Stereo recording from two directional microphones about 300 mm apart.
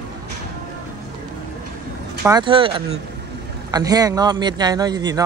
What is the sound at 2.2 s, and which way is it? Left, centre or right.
Speech, centre.